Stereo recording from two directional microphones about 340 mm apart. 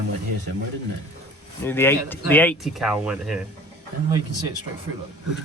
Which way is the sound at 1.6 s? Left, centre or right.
Centre.